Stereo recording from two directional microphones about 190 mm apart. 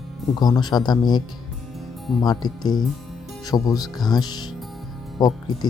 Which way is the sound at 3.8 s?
20° left (ahead or behind).